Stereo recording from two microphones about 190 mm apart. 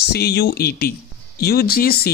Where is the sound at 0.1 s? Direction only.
60° left (ahead or behind).